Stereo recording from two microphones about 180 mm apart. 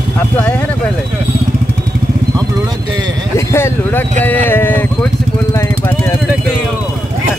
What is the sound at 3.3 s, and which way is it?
Speech, 15° left (ahead or behind).